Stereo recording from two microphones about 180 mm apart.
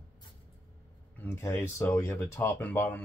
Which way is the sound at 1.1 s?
10° left (ahead or behind).